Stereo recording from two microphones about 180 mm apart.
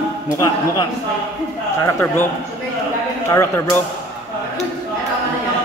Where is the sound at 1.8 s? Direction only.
15° left (ahead or behind).